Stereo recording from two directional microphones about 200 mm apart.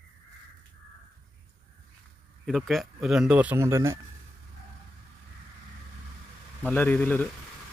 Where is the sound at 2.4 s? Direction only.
Centre (ahead or behind).